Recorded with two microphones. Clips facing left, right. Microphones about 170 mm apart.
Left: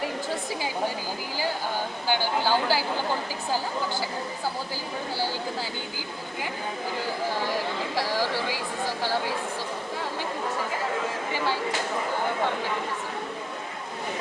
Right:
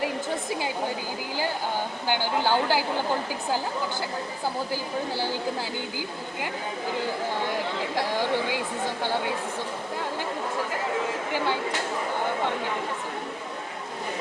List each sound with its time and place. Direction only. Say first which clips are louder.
2.0 s a woman's voice: even; 20° right (ahead or behind)
7.9 s a woman's voice: right 2 dB; 20° right (ahead or behind)